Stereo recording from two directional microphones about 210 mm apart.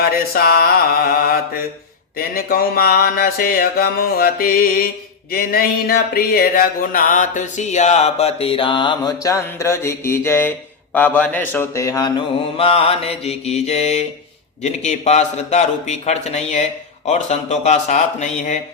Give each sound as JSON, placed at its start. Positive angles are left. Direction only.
{"t": 0.0, "sound": "a sound", "side_deg": 45}
{"t": 5.3, "sound": "mantra", "side_deg": 45}
{"t": 14.6, "sound": "a man's voice", "side_deg": 35}